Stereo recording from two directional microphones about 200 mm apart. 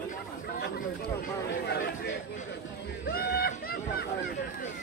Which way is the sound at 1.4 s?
55° left (ahead or behind).